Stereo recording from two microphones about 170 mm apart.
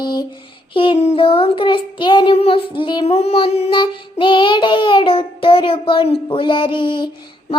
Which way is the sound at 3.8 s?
30° left (ahead or behind).